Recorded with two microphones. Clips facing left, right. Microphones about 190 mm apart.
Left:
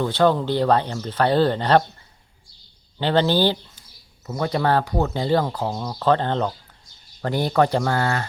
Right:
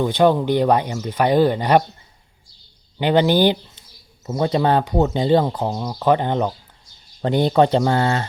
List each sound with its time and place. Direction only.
0.0 s speech: 15° right (ahead or behind)
3.0 s speech: 15° right (ahead or behind)